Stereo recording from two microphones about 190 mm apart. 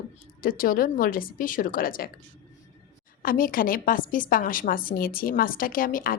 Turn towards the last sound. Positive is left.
turn(degrees=45)  # may be behind; listen again after turning